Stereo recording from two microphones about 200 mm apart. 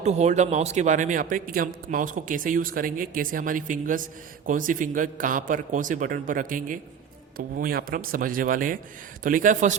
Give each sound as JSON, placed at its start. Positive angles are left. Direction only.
{"t": 0.0, "sound": "speech", "side_deg": -35}